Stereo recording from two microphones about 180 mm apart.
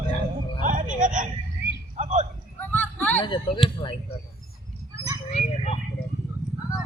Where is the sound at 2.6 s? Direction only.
10° left (ahead or behind).